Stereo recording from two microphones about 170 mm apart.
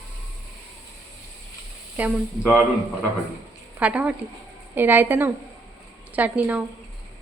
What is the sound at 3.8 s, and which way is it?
A woman's voice, 10° right (ahead or behind).